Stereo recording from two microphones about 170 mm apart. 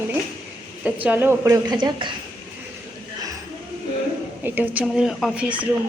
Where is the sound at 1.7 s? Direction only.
25° right (ahead or behind).